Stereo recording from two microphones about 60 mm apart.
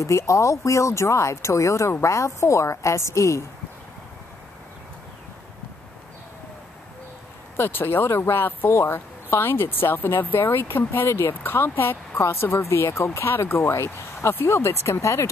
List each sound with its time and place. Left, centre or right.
0.0 s speech: left
7.5 s speech: left